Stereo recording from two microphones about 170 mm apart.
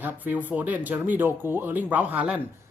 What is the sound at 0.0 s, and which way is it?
Speech, 10° right (ahead or behind).